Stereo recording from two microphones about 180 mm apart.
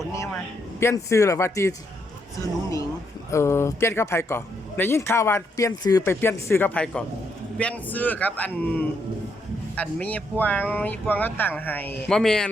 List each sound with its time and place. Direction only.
0.8 s speech: 15° left (ahead or behind)
3.2 s speech: 15° left (ahead or behind)